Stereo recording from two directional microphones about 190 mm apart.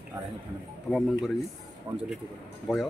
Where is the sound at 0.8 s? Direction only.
Centre (ahead or behind).